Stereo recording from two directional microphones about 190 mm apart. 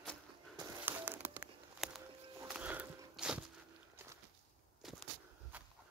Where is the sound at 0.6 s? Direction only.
10° right (ahead or behind).